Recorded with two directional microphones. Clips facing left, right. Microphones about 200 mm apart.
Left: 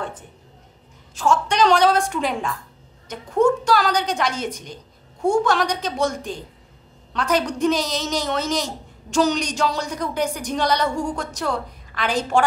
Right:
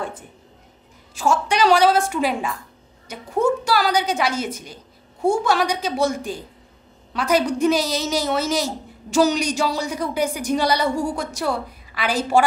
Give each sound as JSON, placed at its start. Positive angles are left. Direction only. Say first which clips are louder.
{"t": 1.1, "sound": "a woman's voice", "louder": "even", "side_deg": -10}